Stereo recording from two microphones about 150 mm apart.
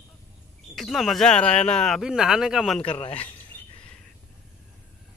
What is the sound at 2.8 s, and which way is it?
Speech, 35° left (ahead or behind).